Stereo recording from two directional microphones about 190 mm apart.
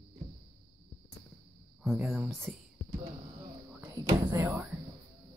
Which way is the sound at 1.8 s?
5° right (ahead or behind).